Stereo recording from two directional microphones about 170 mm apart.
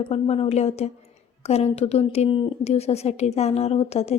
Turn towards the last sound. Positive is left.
turn(degrees=40)  # may be behind; listen again after turning